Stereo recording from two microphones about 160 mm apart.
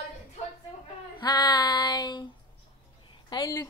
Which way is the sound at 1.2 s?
25° left (ahead or behind).